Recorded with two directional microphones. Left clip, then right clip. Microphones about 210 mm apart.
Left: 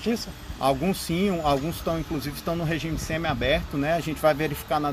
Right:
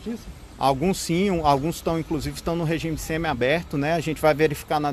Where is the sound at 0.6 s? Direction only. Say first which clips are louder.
Right 2 dB; 50° right (ahead or behind).